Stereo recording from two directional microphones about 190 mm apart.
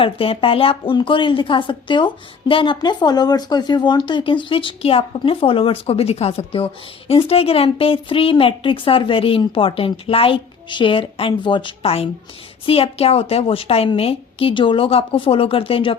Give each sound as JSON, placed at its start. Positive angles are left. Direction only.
{"t": 0.0, "sound": "a woman's voice", "side_deg": 30}